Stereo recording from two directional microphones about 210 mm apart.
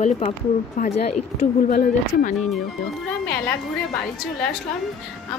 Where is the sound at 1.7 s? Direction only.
50° left (ahead or behind).